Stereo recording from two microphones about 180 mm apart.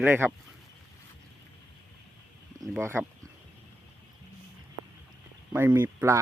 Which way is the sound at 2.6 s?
15° right (ahead or behind).